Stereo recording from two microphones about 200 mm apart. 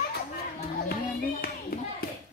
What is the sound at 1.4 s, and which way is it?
Clapping, 50° left (ahead or behind).